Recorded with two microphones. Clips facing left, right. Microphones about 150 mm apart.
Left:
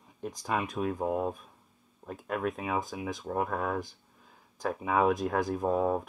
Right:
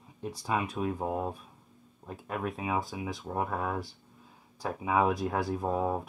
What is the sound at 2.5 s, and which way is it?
Speech, 20° right (ahead or behind).